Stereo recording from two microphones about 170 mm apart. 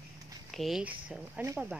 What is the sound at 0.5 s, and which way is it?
Speech, centre (ahead or behind).